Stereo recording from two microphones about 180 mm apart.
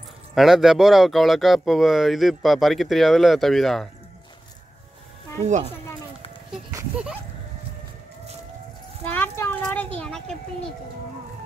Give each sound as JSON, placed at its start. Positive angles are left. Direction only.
{"t": 0.3, "sound": "speech", "side_deg": 0}
{"t": 9.0, "sound": "a child's voice", "side_deg": 10}